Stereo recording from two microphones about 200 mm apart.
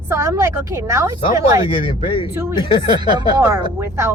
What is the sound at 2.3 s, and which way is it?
A woman's voice, 10° right (ahead or behind).